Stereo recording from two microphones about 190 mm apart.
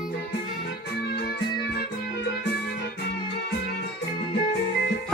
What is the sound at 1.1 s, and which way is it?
Music, 60° left (ahead or behind).